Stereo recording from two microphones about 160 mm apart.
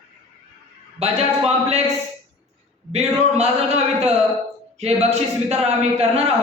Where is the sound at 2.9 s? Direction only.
40° right (ahead or behind).